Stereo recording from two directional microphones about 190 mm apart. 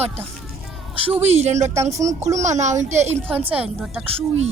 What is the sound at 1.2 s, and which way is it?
Speech, 35° right (ahead or behind).